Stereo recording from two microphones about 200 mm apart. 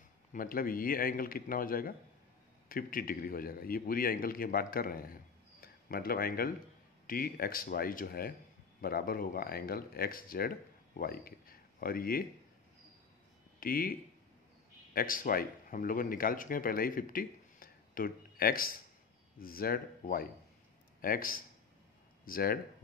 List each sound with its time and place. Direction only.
0.3 s a man's voice: 45° left (ahead or behind)
13.6 s speech: 45° left (ahead or behind)
15.0 s a man's voice: 45° left (ahead or behind)